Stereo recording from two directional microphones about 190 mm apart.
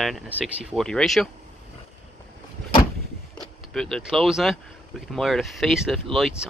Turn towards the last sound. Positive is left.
turn(degrees=0)  # may be behind; listen again after turning